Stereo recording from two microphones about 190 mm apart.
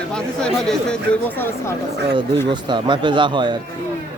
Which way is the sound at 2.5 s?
25° right (ahead or behind).